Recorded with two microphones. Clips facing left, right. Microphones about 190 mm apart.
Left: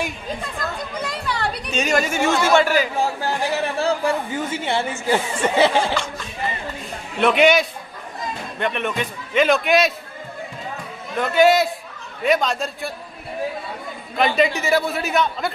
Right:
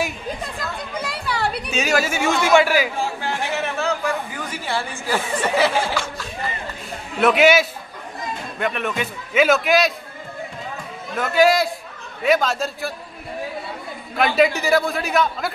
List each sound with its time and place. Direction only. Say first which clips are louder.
0.9 s chatter: right 3 dB; 5° right (ahead or behind)
3.0 s speech: left 3 dB; 40° left (ahead or behind)
7.2 s a man's voice: right 1 dB; 5° right (ahead or behind)
11.1 s a man's voice: left 1 dB; centre (ahead or behind)
14.1 s a man's voice: right 1 dB; 5° right (ahead or behind)